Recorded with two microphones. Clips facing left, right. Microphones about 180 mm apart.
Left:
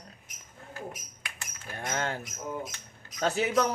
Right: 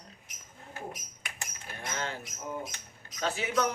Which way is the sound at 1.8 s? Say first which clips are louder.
Left 4 dB; 50° left (ahead or behind).